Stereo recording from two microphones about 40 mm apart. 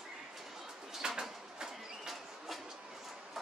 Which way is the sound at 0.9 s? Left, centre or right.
Centre.